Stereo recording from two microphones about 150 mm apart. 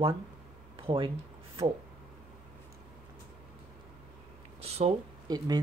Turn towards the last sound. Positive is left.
turn(degrees=-25)  # may be behind; listen again after turning